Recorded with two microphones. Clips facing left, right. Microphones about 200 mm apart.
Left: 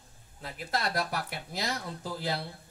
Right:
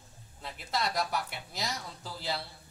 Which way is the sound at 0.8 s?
55° left (ahead or behind).